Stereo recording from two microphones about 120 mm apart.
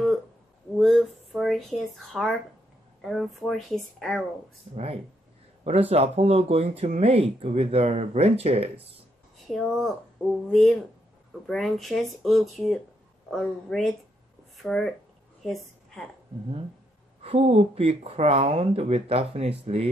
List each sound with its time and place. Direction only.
0.7 s a sound: 5° right (ahead or behind)
3.0 s speech: centre (ahead or behind)
5.6 s speech: 60° right (ahead or behind)
9.5 s speech: centre (ahead or behind)
11.4 s speech: centre (ahead or behind)
15.4 s a sound: centre (ahead or behind)
17.2 s speech: 60° right (ahead or behind)